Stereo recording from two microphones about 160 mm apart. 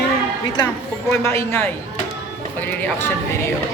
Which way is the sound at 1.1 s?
15° left (ahead or behind).